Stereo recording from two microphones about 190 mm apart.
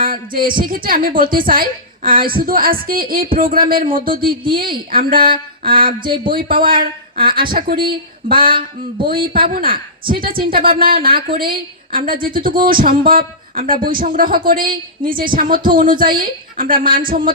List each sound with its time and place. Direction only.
0.0 s a woman's voice: 50° right (ahead or behind)
8.4 s a sound: 25° right (ahead or behind)
9.3 s a woman's voice: 50° right (ahead or behind)